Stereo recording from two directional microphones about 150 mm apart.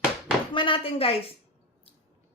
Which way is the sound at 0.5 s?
35° left (ahead or behind).